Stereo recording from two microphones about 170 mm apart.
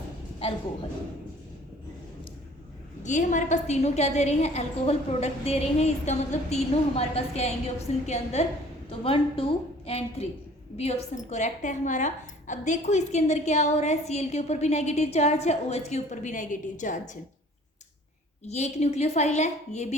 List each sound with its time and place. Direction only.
0.3 s a woman's voice: 35° left (ahead or behind)
3.0 s a woman's voice: 45° left (ahead or behind)
18.4 s a woman's voice: 40° left (ahead or behind)